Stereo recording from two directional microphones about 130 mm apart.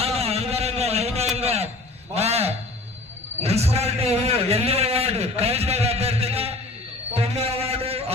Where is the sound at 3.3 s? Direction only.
55° right (ahead or behind).